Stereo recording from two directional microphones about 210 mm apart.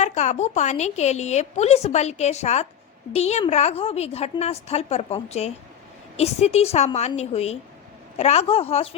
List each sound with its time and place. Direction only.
0.0 s a woman's voice: 35° left (ahead or behind)